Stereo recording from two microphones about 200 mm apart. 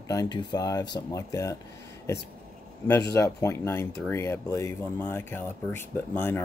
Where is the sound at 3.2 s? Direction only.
15° left (ahead or behind).